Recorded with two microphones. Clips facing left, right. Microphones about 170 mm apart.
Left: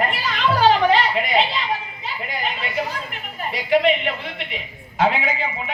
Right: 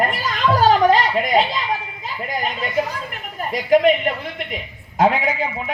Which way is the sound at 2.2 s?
45° right (ahead or behind).